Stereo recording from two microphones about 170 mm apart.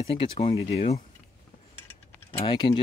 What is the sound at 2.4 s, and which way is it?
Speech, 25° left (ahead or behind).